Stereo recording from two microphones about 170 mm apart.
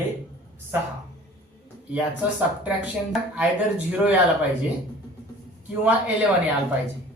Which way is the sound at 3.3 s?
5° right (ahead or behind).